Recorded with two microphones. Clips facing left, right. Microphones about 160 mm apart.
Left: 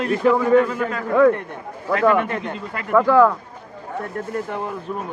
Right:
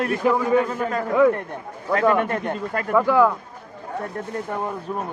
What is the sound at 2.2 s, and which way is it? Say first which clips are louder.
Speech: right 2 dB; 50° right (ahead or behind).